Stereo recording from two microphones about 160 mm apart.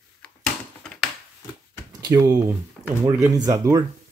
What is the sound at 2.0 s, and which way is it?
Speech, 25° right (ahead or behind).